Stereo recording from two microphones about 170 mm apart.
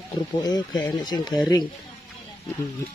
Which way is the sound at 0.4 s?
20° left (ahead or behind).